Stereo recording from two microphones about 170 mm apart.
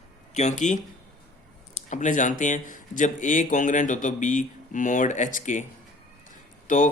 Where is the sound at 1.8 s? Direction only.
45° left (ahead or behind).